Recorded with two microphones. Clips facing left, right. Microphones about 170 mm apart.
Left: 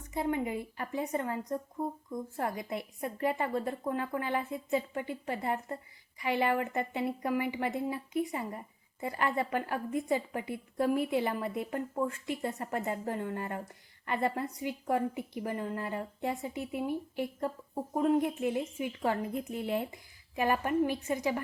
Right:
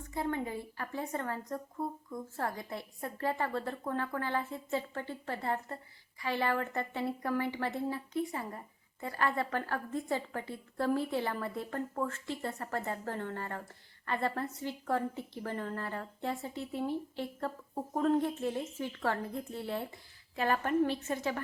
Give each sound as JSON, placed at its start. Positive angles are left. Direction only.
{"t": 0.0, "sound": "a woman's voice", "side_deg": 20}